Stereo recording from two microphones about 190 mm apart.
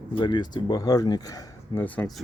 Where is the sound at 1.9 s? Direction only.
10° left (ahead or behind).